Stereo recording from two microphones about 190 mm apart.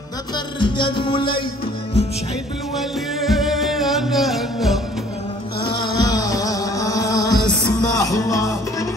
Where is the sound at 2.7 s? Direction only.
Centre (ahead or behind).